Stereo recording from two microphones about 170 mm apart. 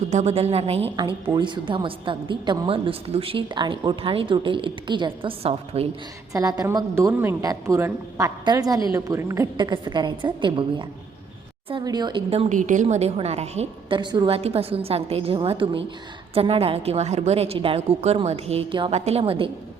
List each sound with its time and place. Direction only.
0.1 s a woman's voice: 40° right (ahead or behind)
6.3 s a woman's voice: 20° right (ahead or behind)
12.3 s a woman's voice: 40° right (ahead or behind)
14.0 s a woman's voice: 25° right (ahead or behind)